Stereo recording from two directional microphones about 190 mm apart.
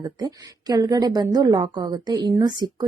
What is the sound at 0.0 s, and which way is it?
A woman's voice, 20° right (ahead or behind).